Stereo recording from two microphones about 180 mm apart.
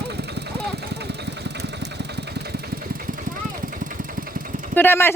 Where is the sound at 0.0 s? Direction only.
70° right (ahead or behind); by 4.7 s 50° right (ahead or behind).